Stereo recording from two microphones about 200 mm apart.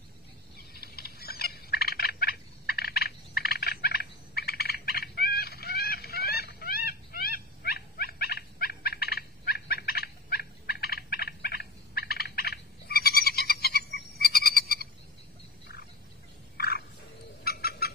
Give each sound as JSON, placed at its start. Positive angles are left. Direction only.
{"t": 0.6, "sound": "turkey", "side_deg": 50}
{"t": 16.5, "sound": "frog", "side_deg": 50}
{"t": 17.4, "sound": "fowl", "side_deg": 50}